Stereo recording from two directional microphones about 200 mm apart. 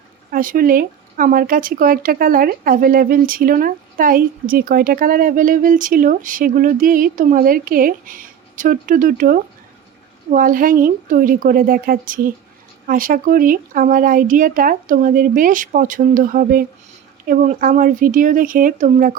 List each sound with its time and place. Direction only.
0.3 s speech: 45° right (ahead or behind)